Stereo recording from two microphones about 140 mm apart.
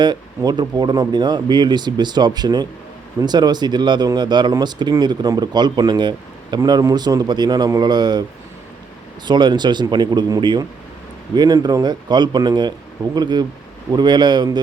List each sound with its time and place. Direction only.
0.0 s speech: 30° right (ahead or behind)
9.2 s speech: 30° right (ahead or behind)